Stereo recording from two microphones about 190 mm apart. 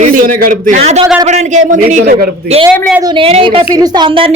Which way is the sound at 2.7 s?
5° left (ahead or behind).